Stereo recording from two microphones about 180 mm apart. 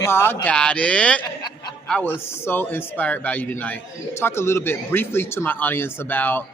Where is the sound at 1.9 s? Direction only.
10° left (ahead or behind).